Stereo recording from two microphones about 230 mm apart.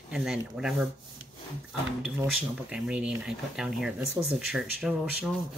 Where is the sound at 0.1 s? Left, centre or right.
Centre.